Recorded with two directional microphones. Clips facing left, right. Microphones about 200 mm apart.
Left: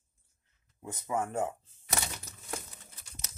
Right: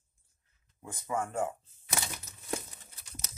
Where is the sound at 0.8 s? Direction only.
20° left (ahead or behind).